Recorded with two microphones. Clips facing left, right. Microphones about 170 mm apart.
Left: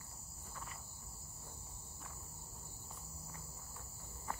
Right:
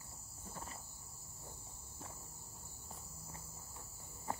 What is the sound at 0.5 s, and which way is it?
Cricket, 35° right (ahead or behind).